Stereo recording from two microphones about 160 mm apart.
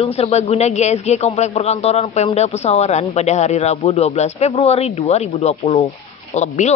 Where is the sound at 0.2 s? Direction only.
40° left (ahead or behind).